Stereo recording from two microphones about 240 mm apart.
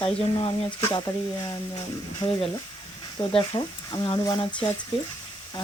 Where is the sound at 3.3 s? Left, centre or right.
Left.